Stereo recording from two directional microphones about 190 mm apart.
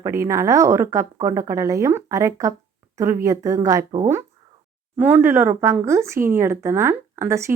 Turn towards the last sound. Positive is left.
turn(degrees=-15)  # may be behind; listen again after turning